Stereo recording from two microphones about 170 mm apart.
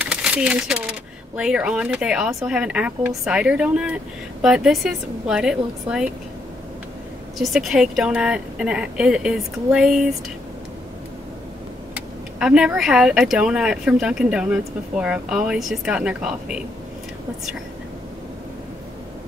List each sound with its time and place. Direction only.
0.0 s speech: 5° right (ahead or behind)
7.3 s speech: centre (ahead or behind)
11.9 s speech: 5° right (ahead or behind)